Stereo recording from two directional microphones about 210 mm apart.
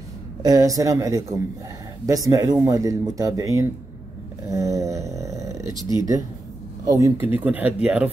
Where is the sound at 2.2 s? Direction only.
15° right (ahead or behind).